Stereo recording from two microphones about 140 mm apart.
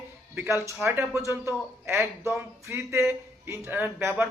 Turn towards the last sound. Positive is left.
turn(degrees=-15)  # may be behind; listen again after turning